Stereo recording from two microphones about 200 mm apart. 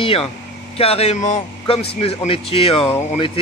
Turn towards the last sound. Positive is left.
turn(degrees=30)  # may be behind; listen again after turning